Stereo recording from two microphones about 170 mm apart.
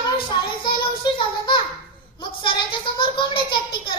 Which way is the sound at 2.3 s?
30° left (ahead or behind).